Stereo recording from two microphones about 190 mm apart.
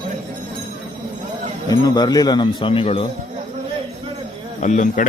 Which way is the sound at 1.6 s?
20° left (ahead or behind).